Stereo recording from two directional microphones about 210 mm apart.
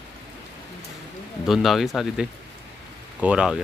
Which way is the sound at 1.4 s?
Centre (ahead or behind).